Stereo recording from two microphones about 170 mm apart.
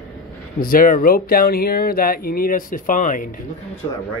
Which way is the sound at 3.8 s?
20° left (ahead or behind).